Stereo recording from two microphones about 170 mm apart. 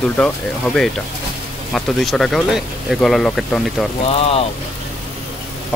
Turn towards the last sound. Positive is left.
turn(degrees=35)  # may be behind; listen again after turning